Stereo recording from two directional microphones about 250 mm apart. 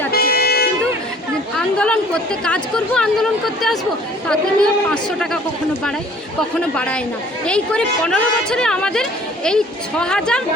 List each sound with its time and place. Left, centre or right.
0.1 s vehicle: left
1.5 s speech: centre
7.4 s speech: centre